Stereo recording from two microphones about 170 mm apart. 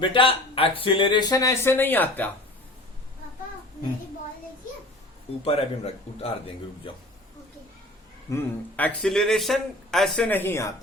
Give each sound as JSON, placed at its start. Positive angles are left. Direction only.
{"t": 0.0, "sound": "speech", "side_deg": 30}
{"t": 5.5, "sound": "speech", "side_deg": 35}
{"t": 8.3, "sound": "speech", "side_deg": 10}